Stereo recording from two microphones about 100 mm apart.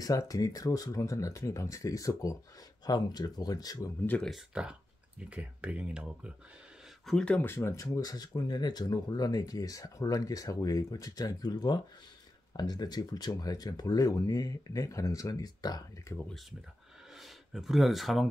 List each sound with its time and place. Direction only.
0.0 s speech: 35° left (ahead or behind)
4.6 s speech: 10° right (ahead or behind)
7.1 s speech: 10° left (ahead or behind); by 15.8 s 40° left (ahead or behind)
16.1 s speech: 30° left (ahead or behind)
17.2 s speech: centre (ahead or behind)